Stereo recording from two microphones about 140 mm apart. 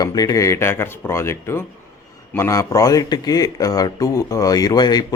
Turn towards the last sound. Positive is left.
turn(degrees=30)  # may be behind; listen again after turning